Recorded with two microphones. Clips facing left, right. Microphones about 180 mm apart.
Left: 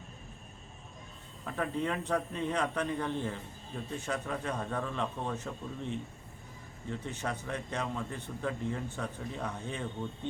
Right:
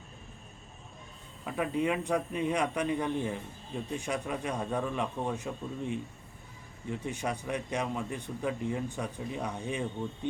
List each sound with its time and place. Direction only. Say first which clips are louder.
1.5 s speech: right 3 dB; 10° right (ahead or behind)
7.0 s speech: right 4 dB; 10° right (ahead or behind)